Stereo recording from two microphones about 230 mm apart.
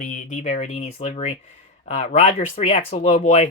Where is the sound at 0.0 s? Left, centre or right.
Left.